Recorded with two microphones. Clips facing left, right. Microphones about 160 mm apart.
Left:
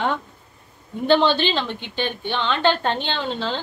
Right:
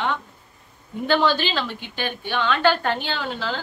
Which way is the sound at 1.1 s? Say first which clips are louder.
Left 3 dB; 25° left (ahead or behind).